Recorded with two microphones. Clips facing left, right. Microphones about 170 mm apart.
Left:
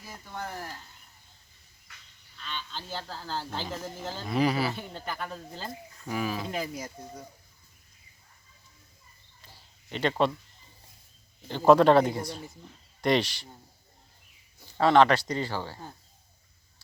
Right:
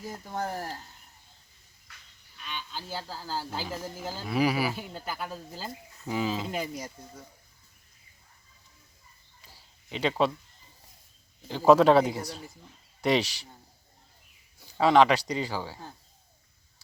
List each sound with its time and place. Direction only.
0.3 s speech: 40° right (ahead or behind)
2.4 s speech: 10° right (ahead or behind)
6.1 s speech: 20° right (ahead or behind)
6.5 s speech: centre (ahead or behind)
9.5 s a sound: 5° right (ahead or behind)
11.4 s speech: 5° right (ahead or behind)
14.8 s speech: 5° right (ahead or behind)